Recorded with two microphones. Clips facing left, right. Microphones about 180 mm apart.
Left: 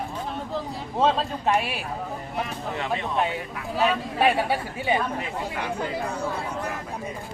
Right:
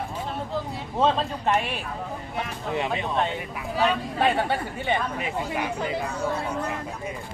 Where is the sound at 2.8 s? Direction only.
20° right (ahead or behind).